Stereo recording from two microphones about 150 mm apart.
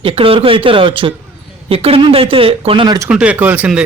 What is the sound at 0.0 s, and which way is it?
Speech, 35° right (ahead or behind).